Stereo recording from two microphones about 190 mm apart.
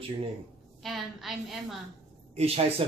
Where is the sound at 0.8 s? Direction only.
Centre (ahead or behind).